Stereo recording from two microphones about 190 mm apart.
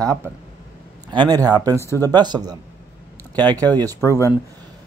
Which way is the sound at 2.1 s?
20° right (ahead or behind).